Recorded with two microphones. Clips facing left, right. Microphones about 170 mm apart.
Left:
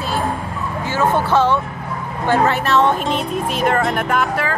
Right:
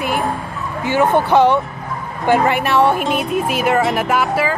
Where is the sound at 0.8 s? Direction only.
15° right (ahead or behind).